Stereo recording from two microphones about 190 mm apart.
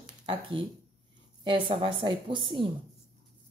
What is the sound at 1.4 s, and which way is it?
A woman's voice, 25° right (ahead or behind).